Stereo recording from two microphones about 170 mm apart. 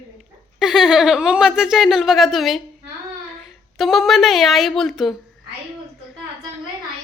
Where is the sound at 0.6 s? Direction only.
Centre (ahead or behind).